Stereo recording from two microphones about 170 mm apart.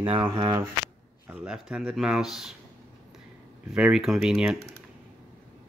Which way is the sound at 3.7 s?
5° right (ahead or behind).